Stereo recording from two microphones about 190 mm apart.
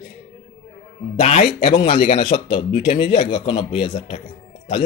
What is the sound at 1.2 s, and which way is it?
Speech, 40° left (ahead or behind).